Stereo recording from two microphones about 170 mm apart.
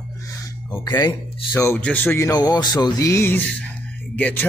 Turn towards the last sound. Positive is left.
turn(degrees=10)  # may be behind; listen again after turning